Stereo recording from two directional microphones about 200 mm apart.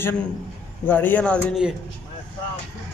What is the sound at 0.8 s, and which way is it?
Speech, 10° left (ahead or behind).